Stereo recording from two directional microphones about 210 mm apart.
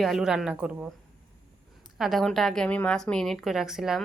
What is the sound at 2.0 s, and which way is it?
A woman's voice, centre (ahead or behind).